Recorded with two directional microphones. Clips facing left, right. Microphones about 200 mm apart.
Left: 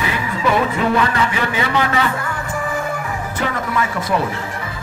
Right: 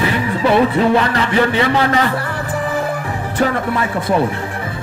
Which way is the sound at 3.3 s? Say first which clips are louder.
Right 5 dB; 30° right (ahead or behind).